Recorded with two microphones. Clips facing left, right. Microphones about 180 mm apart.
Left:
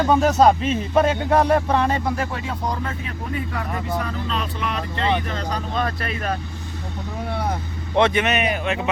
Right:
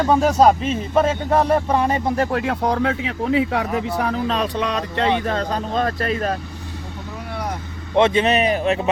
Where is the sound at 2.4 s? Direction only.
65° right (ahead or behind).